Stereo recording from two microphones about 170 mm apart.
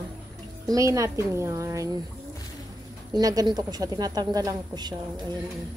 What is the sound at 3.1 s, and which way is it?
A woman's voice, 20° right (ahead or behind).